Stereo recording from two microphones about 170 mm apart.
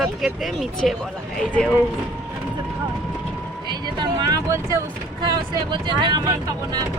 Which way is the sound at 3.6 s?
25° right (ahead or behind).